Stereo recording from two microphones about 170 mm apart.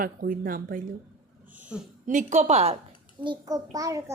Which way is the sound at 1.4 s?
10° right (ahead or behind).